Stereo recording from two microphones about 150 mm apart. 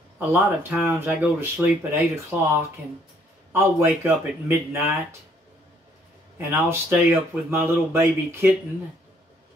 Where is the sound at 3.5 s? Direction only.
15° right (ahead or behind).